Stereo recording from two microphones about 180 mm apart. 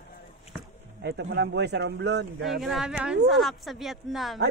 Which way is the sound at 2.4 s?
Centre (ahead or behind).